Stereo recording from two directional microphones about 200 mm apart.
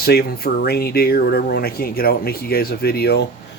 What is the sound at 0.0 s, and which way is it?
Speech, 50° left (ahead or behind).